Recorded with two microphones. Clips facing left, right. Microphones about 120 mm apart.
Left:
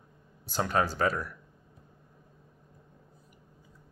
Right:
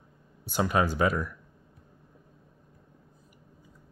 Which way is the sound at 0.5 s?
10° right (ahead or behind).